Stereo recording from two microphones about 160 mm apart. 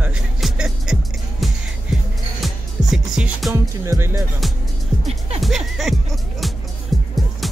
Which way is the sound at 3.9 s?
20° right (ahead or behind).